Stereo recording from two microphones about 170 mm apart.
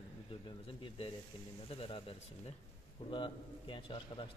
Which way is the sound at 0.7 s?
30° left (ahead or behind).